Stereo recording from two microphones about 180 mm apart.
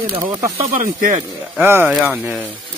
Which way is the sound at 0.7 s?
50° right (ahead or behind).